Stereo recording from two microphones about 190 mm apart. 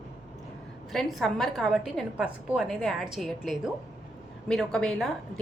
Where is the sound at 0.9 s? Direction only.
Centre (ahead or behind).